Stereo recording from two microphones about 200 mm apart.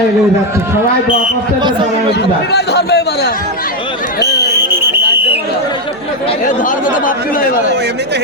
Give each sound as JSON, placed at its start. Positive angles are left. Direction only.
{"t": 2.5, "sound": "a man's voice", "side_deg": 55}